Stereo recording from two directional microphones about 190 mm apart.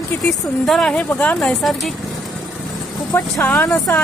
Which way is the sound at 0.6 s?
5° left (ahead or behind).